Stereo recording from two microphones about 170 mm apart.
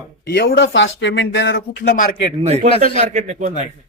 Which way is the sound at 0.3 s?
75° left (ahead or behind).